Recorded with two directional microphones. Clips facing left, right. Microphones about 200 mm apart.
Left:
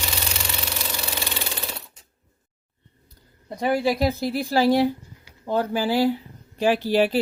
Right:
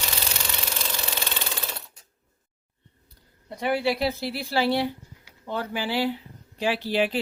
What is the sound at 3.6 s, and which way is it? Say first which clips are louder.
A woman's voice: left 3 dB; 40° left (ahead or behind).